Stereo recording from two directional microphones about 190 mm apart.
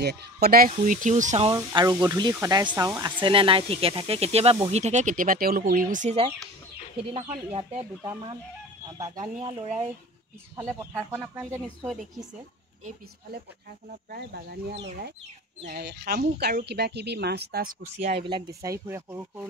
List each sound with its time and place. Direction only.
0.0 s speech: 55° right (ahead or behind); by 1.5 s 40° right (ahead or behind)
1.5 s speech: 20° right (ahead or behind)
8.0 s speech: 20° right (ahead or behind)
9.1 s speech: 40° right (ahead or behind)
10.8 s speech: 15° right (ahead or behind)
11.8 s speech: centre (ahead or behind)
13.8 s speech: 55° right (ahead or behind)
17.8 s speech: 35° right (ahead or behind)
18.2 s speech: 20° right (ahead or behind)